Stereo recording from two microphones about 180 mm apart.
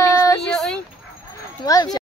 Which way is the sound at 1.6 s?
20° left (ahead or behind).